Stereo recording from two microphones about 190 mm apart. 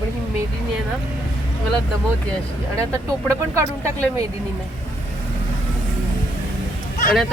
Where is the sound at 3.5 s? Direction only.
15° right (ahead or behind).